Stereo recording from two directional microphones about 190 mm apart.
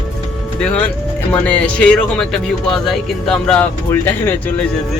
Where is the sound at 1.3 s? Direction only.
5° left (ahead or behind).